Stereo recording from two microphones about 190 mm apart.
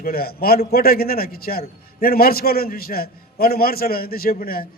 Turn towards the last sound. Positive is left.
turn(degrees=50)  # may be behind; listen again after turning